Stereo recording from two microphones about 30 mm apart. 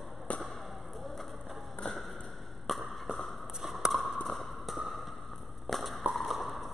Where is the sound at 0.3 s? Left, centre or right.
Left.